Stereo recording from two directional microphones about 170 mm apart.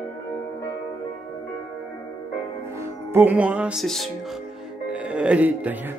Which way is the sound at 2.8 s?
15° right (ahead or behind).